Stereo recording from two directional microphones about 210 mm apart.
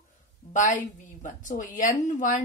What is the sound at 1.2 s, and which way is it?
A woman's voice, 40° left (ahead or behind).